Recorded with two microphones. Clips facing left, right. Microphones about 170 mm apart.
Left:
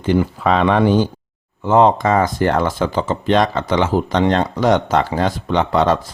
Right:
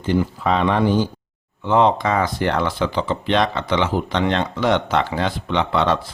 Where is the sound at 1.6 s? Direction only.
45° left (ahead or behind).